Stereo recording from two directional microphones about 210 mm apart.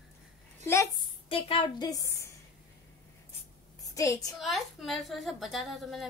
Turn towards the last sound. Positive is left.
turn(degrees=0)  # may be behind; listen again after turning